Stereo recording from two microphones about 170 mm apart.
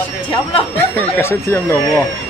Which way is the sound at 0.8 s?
10° left (ahead or behind).